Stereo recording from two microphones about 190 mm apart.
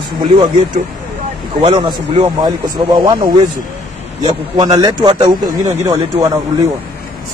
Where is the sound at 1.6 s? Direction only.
25° right (ahead or behind).